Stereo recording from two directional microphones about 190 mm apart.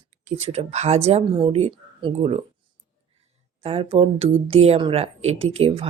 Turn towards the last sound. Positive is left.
turn(degrees=-30)  # may be behind; listen again after turning